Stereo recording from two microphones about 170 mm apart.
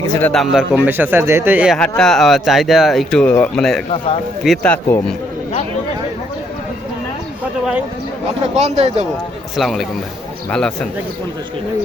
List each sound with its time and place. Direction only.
0.2 s a man's voice: 10° left (ahead or behind)
0.5 s a man's voice: 5° right (ahead or behind)
8.5 s speech: 40° right (ahead or behind)
9.6 s speech: centre (ahead or behind)